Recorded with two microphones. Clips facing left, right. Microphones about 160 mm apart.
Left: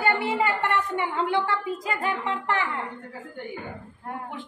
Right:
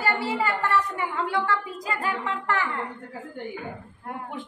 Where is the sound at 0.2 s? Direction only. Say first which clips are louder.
Left 1 dB; 20° left (ahead or behind).